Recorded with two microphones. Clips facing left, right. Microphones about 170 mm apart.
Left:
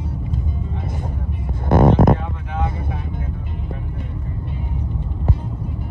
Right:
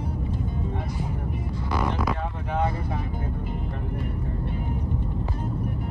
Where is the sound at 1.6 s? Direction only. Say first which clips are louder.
Left 13 dB; 50° left (ahead or behind).